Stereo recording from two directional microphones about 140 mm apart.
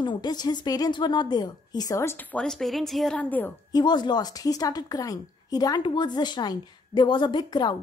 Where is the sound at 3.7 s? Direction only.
30° left (ahead or behind).